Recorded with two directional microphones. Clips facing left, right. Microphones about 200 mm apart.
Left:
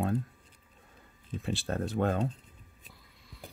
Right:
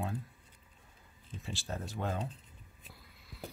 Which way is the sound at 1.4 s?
60° left (ahead or behind).